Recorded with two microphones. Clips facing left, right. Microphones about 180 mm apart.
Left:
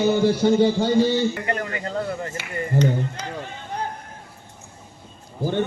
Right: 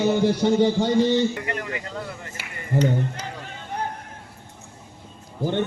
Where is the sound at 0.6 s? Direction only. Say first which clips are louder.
Left 1 dB; 10° left (ahead or behind).